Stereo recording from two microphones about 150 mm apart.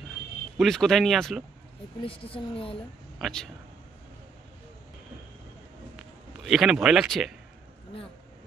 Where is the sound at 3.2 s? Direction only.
Centre (ahead or behind).